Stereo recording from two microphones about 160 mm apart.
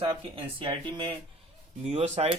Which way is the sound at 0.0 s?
35° right (ahead or behind).